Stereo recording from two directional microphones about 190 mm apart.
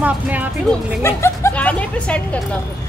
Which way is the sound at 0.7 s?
15° left (ahead or behind).